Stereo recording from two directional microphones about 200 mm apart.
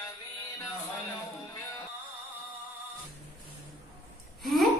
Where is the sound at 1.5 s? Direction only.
20° left (ahead or behind).